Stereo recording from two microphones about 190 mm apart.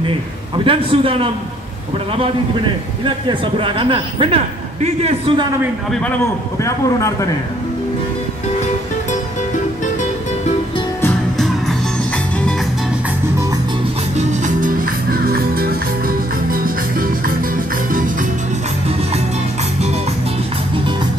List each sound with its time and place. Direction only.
0.7 s speech: 30° right (ahead or behind)
3.3 s speech: 25° right (ahead or behind)
6.6 s speech: 15° left (ahead or behind)
11.0 s music: 5° left (ahead or behind)
14.1 s music: 45° right (ahead or behind)